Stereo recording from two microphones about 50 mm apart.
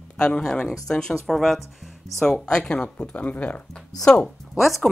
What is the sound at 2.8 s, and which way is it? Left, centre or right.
Speech, left.